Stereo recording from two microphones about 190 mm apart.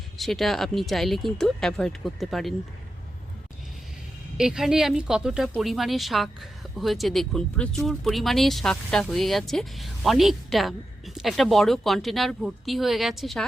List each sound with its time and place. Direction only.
0.2 s speech: centre (ahead or behind)
4.4 s speech: 5° right (ahead or behind)